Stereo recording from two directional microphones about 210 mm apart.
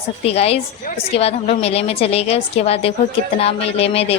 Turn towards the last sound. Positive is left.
turn(degrees=30)  # may be behind; listen again after turning